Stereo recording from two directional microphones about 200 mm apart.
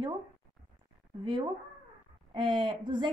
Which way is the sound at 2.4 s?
25° right (ahead or behind).